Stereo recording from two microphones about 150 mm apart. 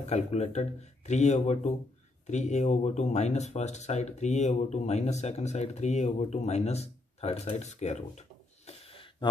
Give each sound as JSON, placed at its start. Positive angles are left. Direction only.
{"t": 0.0, "sound": "speech", "side_deg": 50}